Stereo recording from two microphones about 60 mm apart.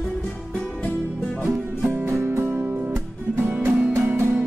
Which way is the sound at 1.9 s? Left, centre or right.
Right.